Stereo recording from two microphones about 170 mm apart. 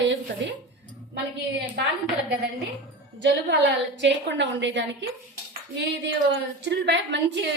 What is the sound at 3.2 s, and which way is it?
A woman's voice, 90° right.